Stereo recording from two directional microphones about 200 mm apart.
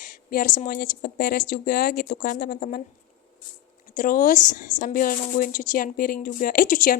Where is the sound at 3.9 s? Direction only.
40° left (ahead or behind).